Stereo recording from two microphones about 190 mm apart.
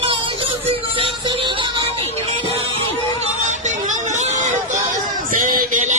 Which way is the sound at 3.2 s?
40° right (ahead or behind).